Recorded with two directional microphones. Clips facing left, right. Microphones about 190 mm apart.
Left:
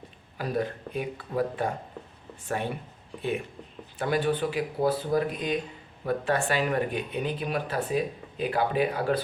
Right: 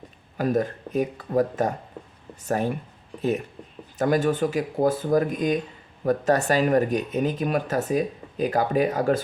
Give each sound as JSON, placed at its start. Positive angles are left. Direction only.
{"t": 0.3, "sound": "speech", "side_deg": -45}